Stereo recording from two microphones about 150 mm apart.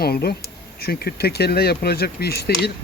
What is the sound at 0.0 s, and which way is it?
Speech, 90° left.